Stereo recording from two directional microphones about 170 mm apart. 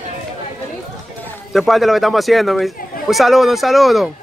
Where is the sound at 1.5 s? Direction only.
Centre (ahead or behind).